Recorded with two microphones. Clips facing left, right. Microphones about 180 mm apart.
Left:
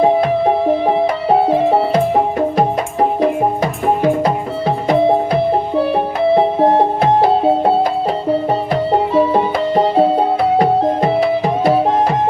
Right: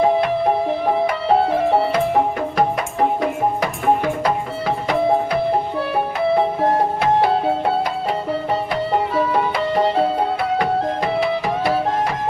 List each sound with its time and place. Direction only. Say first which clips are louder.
0.9 s music: left 3 dB; 20° left (ahead or behind)
3.2 s music: left 5 dB; 30° left (ahead or behind)